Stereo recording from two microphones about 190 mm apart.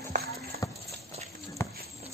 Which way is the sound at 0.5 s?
50° right (ahead or behind).